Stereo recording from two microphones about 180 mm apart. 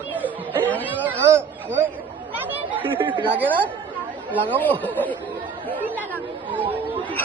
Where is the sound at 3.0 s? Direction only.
25° right (ahead or behind).